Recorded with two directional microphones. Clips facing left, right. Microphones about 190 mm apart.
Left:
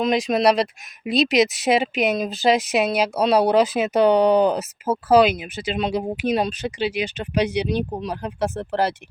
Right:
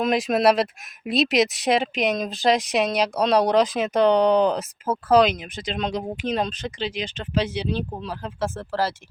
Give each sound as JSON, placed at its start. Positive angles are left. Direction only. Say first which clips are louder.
{"t": 0.0, "sound": "speech", "louder": "left 1 dB", "side_deg": 0}